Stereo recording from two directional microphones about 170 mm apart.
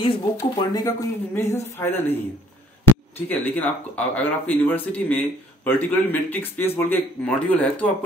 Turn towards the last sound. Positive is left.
turn(degrees=10)  # may be behind; listen again after turning